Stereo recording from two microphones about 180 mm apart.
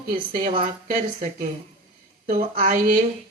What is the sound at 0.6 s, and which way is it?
Speech, 45° right (ahead or behind).